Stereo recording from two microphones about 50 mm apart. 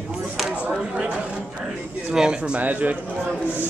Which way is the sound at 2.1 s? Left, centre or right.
Centre.